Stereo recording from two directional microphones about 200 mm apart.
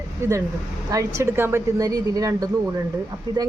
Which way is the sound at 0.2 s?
15° right (ahead or behind).